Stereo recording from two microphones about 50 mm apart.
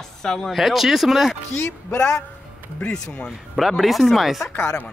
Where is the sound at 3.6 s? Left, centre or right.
Centre.